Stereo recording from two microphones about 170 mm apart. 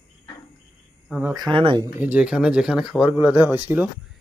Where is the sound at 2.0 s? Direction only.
10° right (ahead or behind).